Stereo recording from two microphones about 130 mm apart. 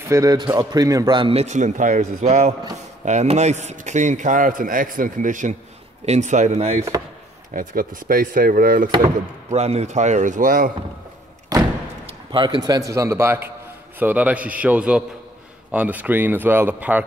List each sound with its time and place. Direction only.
0.1 s a man's voice: 25° right (ahead or behind)
1.1 s speech: 40° right (ahead or behind)
1.4 s a man's voice: 65° right (ahead or behind)
6.0 s a man's voice: 65° right (ahead or behind)
7.5 s speech: 90° right
9.5 s a man's voice: 55° right (ahead or behind); by 10.7 s 90° right
11.5 s a sound: 30° right (ahead or behind)
12.1 s a man's voice: 35° right (ahead or behind); by 17.0 s 15° right (ahead or behind)